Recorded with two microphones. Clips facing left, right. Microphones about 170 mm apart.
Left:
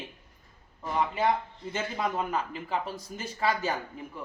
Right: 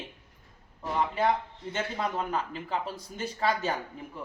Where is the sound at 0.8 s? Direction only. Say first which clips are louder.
Even; centre (ahead or behind).